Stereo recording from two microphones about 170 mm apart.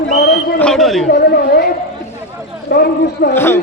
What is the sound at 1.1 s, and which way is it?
Speech, 70° left (ahead or behind).